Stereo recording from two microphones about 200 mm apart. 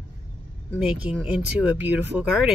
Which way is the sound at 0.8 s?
5° right (ahead or behind).